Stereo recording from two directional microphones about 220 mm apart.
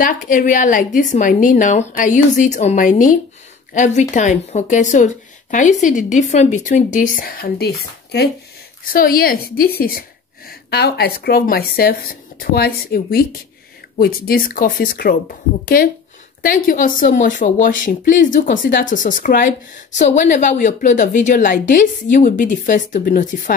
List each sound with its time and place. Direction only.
0.0 s speech: 35° left (ahead or behind)